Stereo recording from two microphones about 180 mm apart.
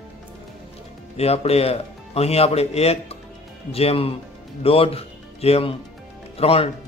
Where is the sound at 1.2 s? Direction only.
35° left (ahead or behind).